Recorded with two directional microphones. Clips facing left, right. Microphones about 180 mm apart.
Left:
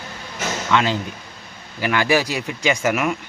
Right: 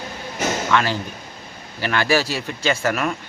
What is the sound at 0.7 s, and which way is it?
Speech, 20° left (ahead or behind).